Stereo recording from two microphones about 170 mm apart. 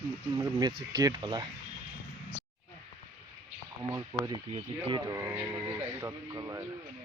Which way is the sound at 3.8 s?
20° right (ahead or behind).